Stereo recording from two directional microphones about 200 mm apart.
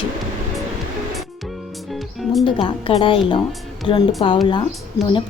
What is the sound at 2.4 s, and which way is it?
A woman's voice, 25° left (ahead or behind).